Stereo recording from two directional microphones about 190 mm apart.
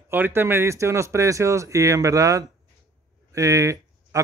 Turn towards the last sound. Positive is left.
turn(degrees=-15)  # may be behind; listen again after turning